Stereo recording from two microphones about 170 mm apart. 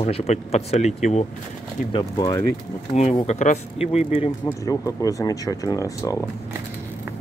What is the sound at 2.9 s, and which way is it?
Speech, 45° left (ahead or behind).